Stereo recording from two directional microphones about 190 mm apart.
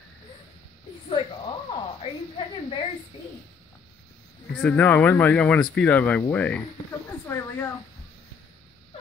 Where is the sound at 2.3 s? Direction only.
30° left (ahead or behind).